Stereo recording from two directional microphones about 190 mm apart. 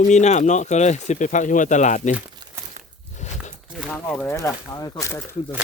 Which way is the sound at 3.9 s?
10° left (ahead or behind).